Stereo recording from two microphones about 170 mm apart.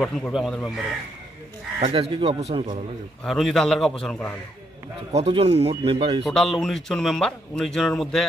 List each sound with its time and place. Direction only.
0.0 s speech: centre (ahead or behind)
1.8 s speech: 35° right (ahead or behind)
3.3 s speech: centre (ahead or behind)
5.1 s speech: 35° right (ahead or behind)
6.2 s speech: centre (ahead or behind)